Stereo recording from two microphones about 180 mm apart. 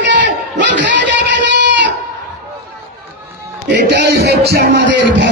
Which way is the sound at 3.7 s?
70° right (ahead or behind).